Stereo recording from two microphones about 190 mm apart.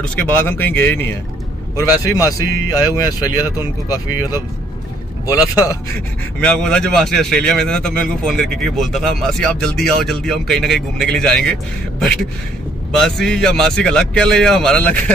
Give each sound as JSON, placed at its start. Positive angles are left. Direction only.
{"t": 0.0, "sound": "speech", "side_deg": 5}
{"t": 2.1, "sound": "speech", "side_deg": 15}
{"t": 6.4, "sound": "speech", "side_deg": 5}